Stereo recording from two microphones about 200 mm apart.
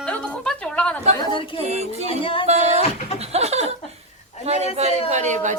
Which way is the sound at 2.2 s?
25° left (ahead or behind).